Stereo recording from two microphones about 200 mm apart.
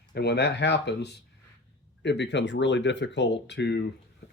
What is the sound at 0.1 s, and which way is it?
Speech, 55° left (ahead or behind).